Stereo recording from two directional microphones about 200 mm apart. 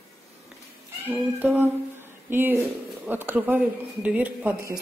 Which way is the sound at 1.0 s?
10° right (ahead or behind).